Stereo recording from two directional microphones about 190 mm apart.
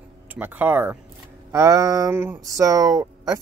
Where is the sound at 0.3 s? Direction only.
10° right (ahead or behind).